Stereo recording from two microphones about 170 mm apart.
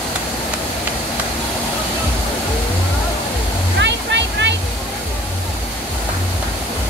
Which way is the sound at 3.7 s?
90° right.